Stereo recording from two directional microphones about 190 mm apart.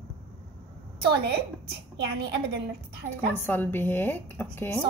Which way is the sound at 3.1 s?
10° left (ahead or behind).